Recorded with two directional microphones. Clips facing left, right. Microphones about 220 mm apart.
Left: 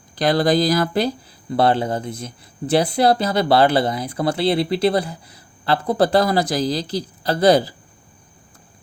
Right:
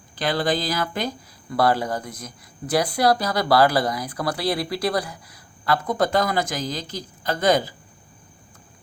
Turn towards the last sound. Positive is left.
turn(degrees=35)  # may be behind; listen again after turning